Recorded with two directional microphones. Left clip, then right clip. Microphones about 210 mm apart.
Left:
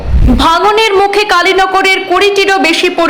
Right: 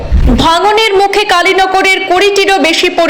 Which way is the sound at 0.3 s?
5° right (ahead or behind).